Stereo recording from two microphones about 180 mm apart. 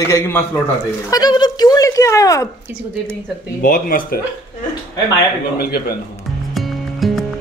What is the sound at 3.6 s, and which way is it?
Speech, 50° left (ahead or behind).